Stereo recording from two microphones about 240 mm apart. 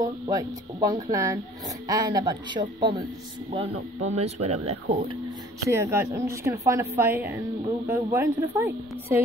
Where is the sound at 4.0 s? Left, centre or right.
Right.